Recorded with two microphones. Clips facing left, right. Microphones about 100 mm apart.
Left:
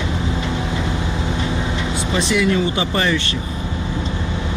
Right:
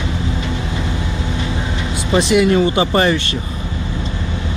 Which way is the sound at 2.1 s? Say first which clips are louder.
Right 6 dB; 60° right (ahead or behind).